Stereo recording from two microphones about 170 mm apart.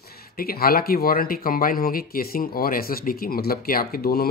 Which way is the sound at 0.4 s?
60° left (ahead or behind).